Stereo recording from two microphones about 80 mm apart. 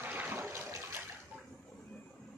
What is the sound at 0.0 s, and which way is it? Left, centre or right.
Toilet flush, right.